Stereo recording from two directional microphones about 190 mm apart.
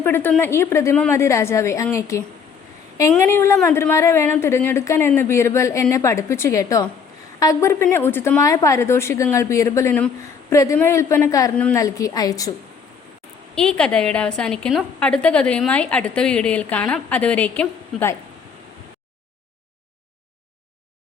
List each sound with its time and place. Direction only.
0.0 s speech: 10° left (ahead or behind)
13.6 s a woman's voice: 5° left (ahead or behind)